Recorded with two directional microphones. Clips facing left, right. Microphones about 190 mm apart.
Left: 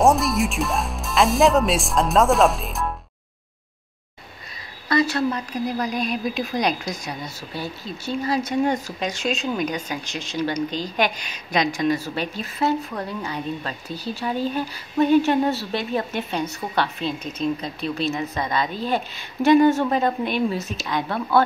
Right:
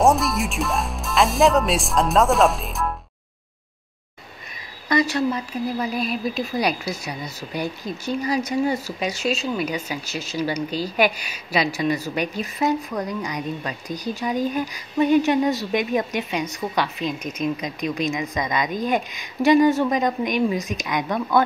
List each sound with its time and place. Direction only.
0.0 s speech: centre (ahead or behind)
4.8 s speech: 15° right (ahead or behind)
17.2 s speech: 30° left (ahead or behind)
17.6 s speech: 15° right (ahead or behind)